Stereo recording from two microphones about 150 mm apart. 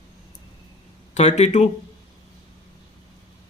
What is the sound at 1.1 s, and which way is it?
Speech, 50° left (ahead or behind).